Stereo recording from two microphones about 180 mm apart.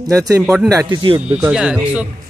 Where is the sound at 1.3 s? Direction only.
5° right (ahead or behind).